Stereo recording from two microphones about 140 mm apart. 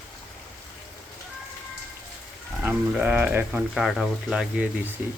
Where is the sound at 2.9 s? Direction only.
10° right (ahead or behind).